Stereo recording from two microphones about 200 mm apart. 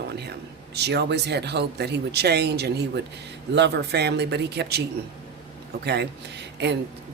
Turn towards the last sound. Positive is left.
turn(degrees=-60)  # may be behind; listen again after turning